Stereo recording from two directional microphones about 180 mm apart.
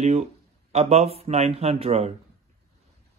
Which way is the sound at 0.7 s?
35° right (ahead or behind).